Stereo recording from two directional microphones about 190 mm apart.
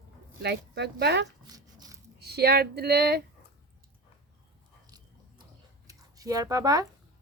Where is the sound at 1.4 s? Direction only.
20° right (ahead or behind).